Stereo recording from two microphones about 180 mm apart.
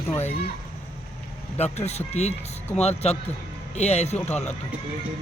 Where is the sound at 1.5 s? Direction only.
35° left (ahead or behind).